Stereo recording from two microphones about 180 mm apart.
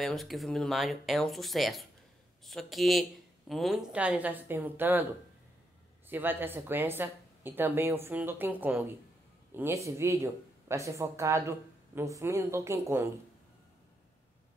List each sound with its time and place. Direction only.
0.0 s speech: centre (ahead or behind)
6.0 s speech: 10° right (ahead or behind)